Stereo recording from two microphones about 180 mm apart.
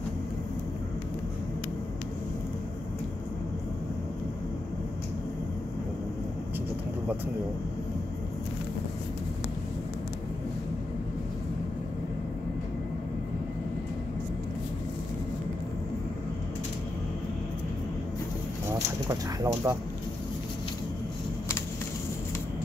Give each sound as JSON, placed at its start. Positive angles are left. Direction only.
{"t": 19.4, "sound": "speech", "side_deg": -15}